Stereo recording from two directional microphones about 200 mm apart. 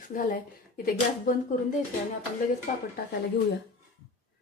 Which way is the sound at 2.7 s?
40° left (ahead or behind).